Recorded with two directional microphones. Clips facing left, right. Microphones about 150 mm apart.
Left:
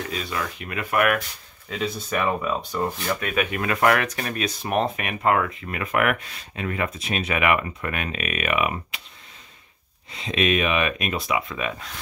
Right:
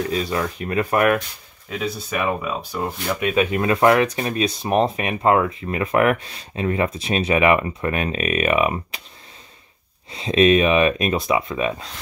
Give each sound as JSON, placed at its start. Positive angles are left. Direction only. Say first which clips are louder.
{"t": 0.1, "sound": "speech", "louder": "right 6 dB", "side_deg": -35}
{"t": 1.7, "sound": "speech", "louder": "right 1 dB", "side_deg": -5}
{"t": 10.1, "sound": "speech", "louder": "right 7 dB", "side_deg": -35}